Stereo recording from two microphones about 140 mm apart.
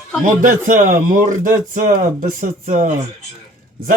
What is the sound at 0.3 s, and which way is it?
Speech, 70° right (ahead or behind).